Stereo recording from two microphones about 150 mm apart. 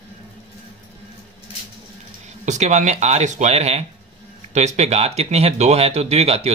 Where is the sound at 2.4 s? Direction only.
50° right (ahead or behind).